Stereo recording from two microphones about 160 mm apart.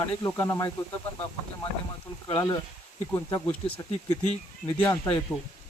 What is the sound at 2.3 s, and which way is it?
Speech, 15° left (ahead or behind).